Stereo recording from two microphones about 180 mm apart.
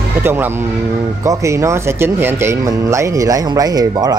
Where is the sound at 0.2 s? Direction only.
10° right (ahead or behind).